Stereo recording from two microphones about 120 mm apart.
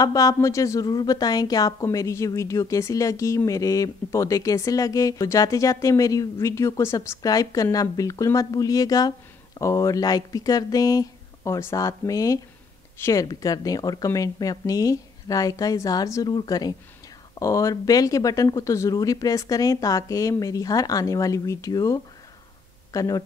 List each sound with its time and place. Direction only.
0.0 s a woman's voice: 30° left (ahead or behind)